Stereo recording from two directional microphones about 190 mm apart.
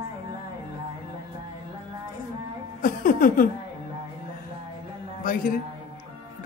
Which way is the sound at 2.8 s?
45° left (ahead or behind).